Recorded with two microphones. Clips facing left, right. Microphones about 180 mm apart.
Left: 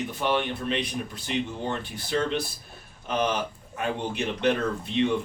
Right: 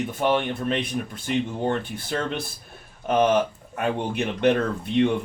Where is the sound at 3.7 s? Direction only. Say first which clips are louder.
Right 3 dB; 55° right (ahead or behind).